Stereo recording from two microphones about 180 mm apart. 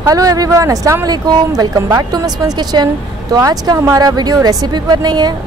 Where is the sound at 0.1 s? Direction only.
20° right (ahead or behind).